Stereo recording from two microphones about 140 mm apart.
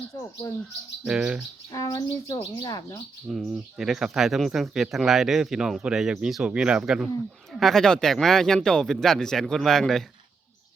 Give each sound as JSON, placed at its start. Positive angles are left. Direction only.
{"t": 0.4, "sound": "speech", "side_deg": 30}
{"t": 1.0, "sound": "speech", "side_deg": -5}
{"t": 1.7, "sound": "speech", "side_deg": 25}
{"t": 3.2, "sound": "speech", "side_deg": 0}